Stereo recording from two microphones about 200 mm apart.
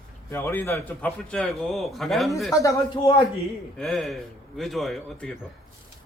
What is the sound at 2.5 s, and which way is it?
Speech, 15° left (ahead or behind).